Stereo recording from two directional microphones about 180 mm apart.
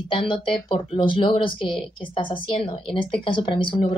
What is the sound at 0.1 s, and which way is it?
A woman's voice, 30° left (ahead or behind).